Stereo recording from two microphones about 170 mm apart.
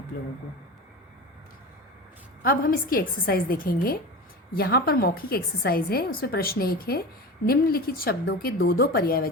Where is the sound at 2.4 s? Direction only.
60° left (ahead or behind).